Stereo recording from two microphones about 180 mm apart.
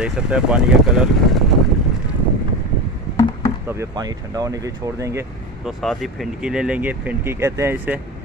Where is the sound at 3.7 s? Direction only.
20° right (ahead or behind).